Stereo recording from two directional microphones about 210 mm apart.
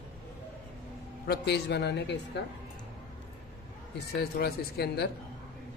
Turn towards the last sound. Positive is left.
turn(degrees=50)  # may be behind; listen again after turning